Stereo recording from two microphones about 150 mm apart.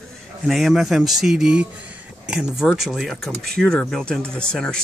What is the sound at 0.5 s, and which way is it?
Speech, centre (ahead or behind).